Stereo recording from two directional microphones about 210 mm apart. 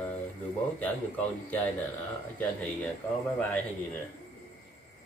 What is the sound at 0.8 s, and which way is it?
Speech, 10° left (ahead or behind).